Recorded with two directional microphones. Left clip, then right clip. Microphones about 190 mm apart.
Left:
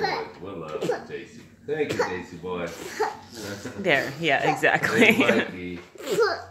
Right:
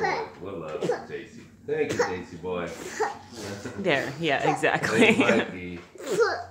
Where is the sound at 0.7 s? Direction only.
20° left (ahead or behind).